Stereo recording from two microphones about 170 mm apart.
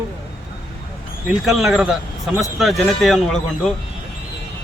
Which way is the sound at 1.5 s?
Centre (ahead or behind).